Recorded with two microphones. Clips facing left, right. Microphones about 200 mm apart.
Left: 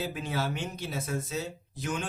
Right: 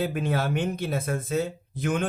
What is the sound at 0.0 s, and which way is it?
Speech, 55° right (ahead or behind).